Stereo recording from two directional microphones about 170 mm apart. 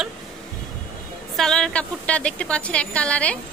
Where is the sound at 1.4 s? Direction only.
5° left (ahead or behind).